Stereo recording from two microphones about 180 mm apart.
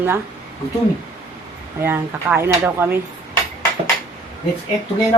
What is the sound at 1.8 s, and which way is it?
A woman's voice, 10° right (ahead or behind).